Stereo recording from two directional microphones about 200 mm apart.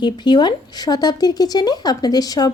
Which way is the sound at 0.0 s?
20° left (ahead or behind).